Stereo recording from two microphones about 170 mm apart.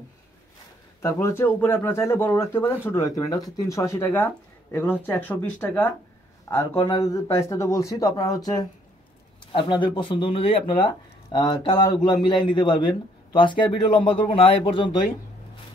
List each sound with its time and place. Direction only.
1.0 s speech: 15° left (ahead or behind)
6.7 s speech: 30° left (ahead or behind)
7.0 s a man's voice: 20° left (ahead or behind)